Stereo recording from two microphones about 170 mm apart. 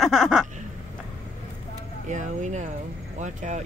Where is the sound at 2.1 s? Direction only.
45° right (ahead or behind).